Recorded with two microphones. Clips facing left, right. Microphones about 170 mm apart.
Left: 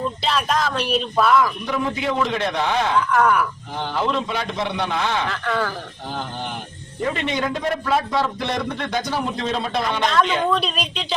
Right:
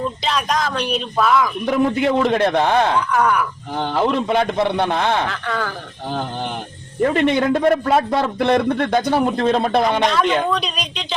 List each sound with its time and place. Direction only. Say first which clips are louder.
0.2 s a man's voice: left 1 dB; centre (ahead or behind)
1.6 s a man's voice: right 6 dB; 55° right (ahead or behind)
3.1 s a man's voice: even; centre (ahead or behind)
3.8 s a man's voice: right 4 dB; 55° right (ahead or behind)
5.3 s a man's voice: left 1 dB; centre (ahead or behind)
7.1 s a man's voice: right 7 dB; 55° right (ahead or behind)
10.1 s a man's voice: right 1 dB; centre (ahead or behind)